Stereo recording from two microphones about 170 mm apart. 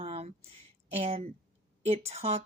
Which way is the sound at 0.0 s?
35° right (ahead or behind).